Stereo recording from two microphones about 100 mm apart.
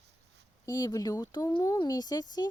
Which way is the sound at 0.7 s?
35° left (ahead or behind).